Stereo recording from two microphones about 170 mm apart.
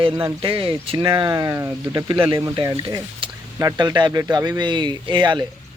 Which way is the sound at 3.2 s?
30° right (ahead or behind).